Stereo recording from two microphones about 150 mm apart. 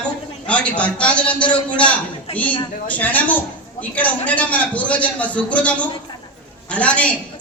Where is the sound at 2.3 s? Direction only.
45° left (ahead or behind).